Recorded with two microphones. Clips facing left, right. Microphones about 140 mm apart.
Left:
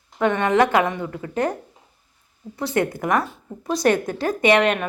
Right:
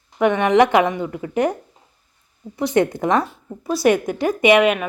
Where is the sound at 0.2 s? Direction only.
15° right (ahead or behind).